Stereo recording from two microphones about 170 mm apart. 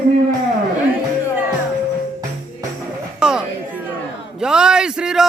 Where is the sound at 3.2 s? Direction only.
5° right (ahead or behind).